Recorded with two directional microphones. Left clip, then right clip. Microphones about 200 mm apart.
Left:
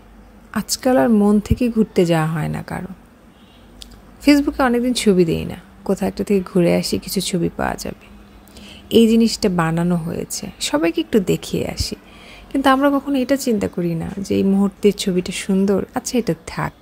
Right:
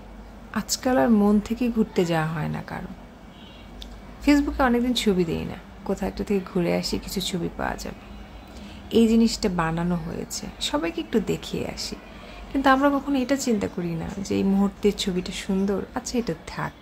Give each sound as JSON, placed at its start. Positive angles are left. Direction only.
{"t": 0.5, "sound": "a woman's voice", "side_deg": 30}
{"t": 4.2, "sound": "a woman's voice", "side_deg": 30}